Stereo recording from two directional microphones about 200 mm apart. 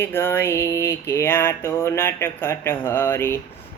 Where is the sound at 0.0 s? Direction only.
10° left (ahead or behind).